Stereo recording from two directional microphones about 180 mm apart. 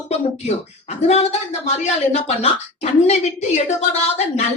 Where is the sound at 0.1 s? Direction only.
35° left (ahead or behind).